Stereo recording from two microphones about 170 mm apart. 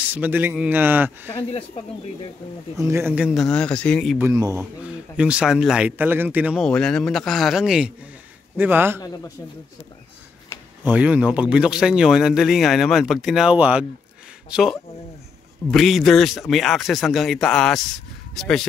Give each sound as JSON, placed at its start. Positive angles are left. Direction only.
{"t": 0.0, "sound": "a man's voice", "side_deg": -10}
{"t": 2.8, "sound": "a man's voice", "side_deg": -15}
{"t": 3.3, "sound": "speech", "side_deg": 5}
{"t": 4.4, "sound": "speech", "side_deg": -20}
{"t": 4.8, "sound": "a man's voice", "side_deg": -5}
{"t": 10.8, "sound": "speech", "side_deg": -10}